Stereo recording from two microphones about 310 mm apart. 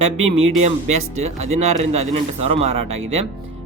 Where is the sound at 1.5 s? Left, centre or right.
Centre.